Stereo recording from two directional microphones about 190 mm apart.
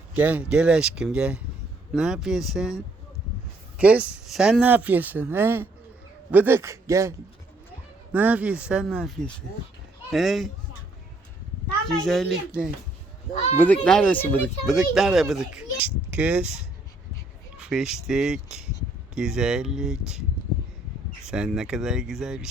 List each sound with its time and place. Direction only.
0.1 s speech: 10° right (ahead or behind)
11.9 s speech: 5° left (ahead or behind)
13.3 s speech: 35° left (ahead or behind)
13.8 s speech: 5° left (ahead or behind)
17.6 s speech: 5° right (ahead or behind)
21.2 s speech: 5° right (ahead or behind)